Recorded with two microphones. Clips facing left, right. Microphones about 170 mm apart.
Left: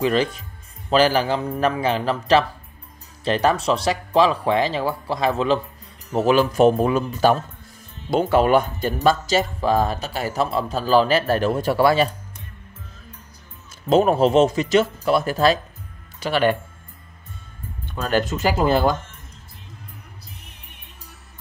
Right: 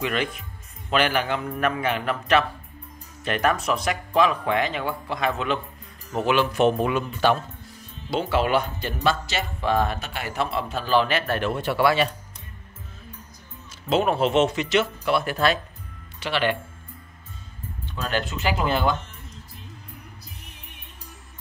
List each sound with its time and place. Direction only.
0.0 s speech: 35° left (ahead or behind)
13.8 s speech: 40° left (ahead or behind)
17.9 s speech: 45° left (ahead or behind)